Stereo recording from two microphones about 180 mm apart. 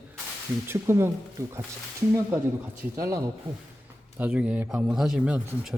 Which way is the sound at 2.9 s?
20° right (ahead or behind).